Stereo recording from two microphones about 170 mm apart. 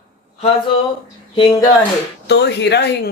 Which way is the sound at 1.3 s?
25° left (ahead or behind).